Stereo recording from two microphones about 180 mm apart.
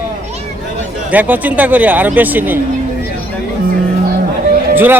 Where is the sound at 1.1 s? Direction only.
10° right (ahead or behind).